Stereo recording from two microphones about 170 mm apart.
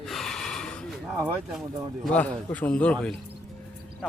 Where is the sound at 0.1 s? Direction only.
Centre (ahead or behind).